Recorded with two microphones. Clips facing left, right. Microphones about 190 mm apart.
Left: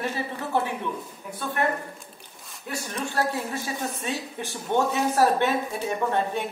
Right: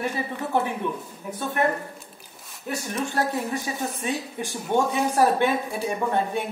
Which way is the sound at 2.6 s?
20° right (ahead or behind).